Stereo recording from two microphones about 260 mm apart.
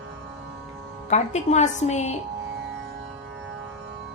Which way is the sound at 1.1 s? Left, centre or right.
Left.